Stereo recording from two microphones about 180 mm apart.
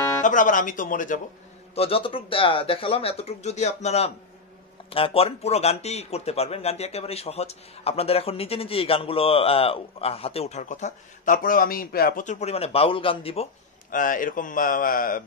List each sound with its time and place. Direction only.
0.2 s speech: 45° left (ahead or behind)
1.8 s speech: 30° left (ahead or behind)
13.8 s speech: 50° left (ahead or behind)